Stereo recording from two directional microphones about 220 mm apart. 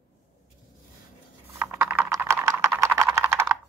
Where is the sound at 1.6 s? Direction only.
5° right (ahead or behind).